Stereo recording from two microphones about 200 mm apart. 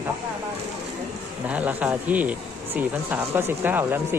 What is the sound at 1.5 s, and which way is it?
Speech, 5° right (ahead or behind).